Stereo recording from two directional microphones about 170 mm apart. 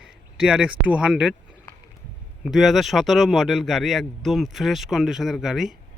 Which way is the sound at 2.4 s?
Centre (ahead or behind).